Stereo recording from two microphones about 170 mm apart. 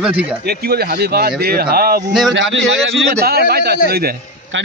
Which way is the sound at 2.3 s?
90° right.